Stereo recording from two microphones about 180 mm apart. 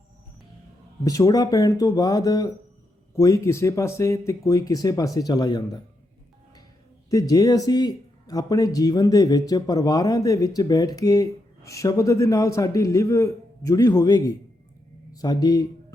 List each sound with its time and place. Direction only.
1.0 s speech: 20° left (ahead or behind)
7.1 s speech: 20° left (ahead or behind)